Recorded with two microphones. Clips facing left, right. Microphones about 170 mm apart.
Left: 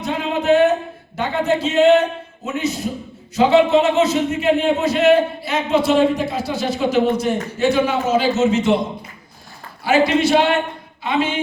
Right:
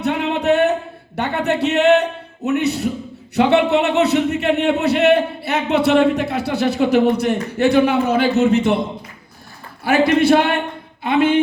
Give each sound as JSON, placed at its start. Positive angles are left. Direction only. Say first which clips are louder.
{"t": 0.0, "sound": "speech", "louder": "right 2 dB", "side_deg": -65}
{"t": 10.2, "sound": "speech", "louder": "right 1 dB", "side_deg": -55}